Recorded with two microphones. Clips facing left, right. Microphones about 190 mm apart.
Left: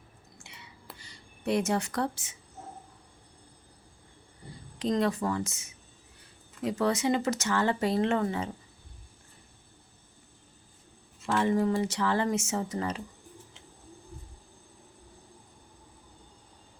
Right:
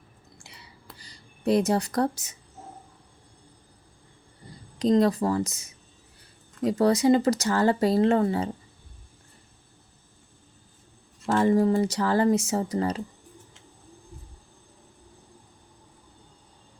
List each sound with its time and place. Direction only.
0.4 s a sound: 35° right (ahead or behind)
0.9 s speech: 35° right (ahead or behind)
4.8 s speech: 35° right (ahead or behind)
11.3 s speech: 35° right (ahead or behind)